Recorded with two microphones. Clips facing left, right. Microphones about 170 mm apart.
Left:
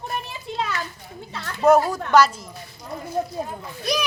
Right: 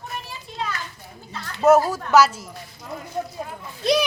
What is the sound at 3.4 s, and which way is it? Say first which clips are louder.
Speech: left 3 dB; 30° left (ahead or behind).